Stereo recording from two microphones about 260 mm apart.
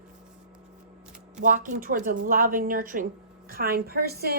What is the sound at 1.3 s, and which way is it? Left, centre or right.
A woman's voice, right.